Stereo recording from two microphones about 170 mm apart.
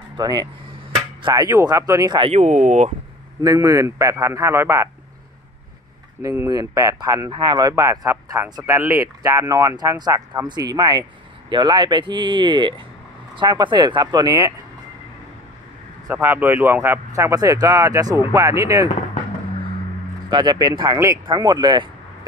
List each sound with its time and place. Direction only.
0.2 s speech: 25° right (ahead or behind)
2.3 s speech: 45° right (ahead or behind)
3.4 s speech: 20° right (ahead or behind)
6.2 s speech: 15° right (ahead or behind)
16.1 s speech: 10° right (ahead or behind)
20.2 s speech: 25° right (ahead or behind)